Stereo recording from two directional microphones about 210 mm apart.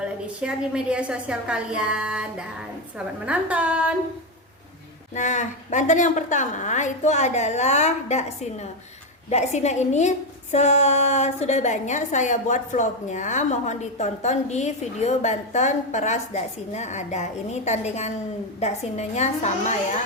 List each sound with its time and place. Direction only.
0.0 s a woman's voice: 5° right (ahead or behind)
3.2 s a woman's voice: 5° right (ahead or behind)
5.1 s a woman's voice: 35° left (ahead or behind)